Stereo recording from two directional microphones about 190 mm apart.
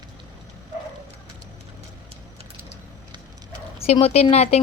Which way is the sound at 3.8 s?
30° left (ahead or behind).